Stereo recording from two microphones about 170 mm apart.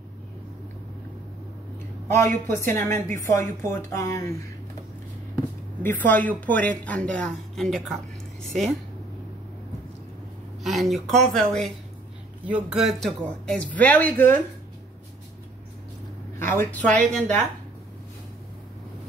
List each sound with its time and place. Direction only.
2.1 s speech: 15° left (ahead or behind)
10.6 s speech: centre (ahead or behind)
16.3 s speech: 10° left (ahead or behind)